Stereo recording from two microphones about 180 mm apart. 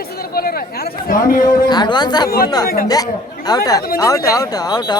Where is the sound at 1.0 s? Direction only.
50° left (ahead or behind).